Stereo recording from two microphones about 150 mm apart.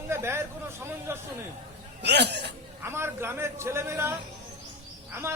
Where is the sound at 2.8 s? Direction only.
15° right (ahead or behind).